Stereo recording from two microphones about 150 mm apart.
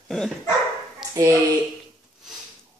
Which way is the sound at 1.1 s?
25° right (ahead or behind).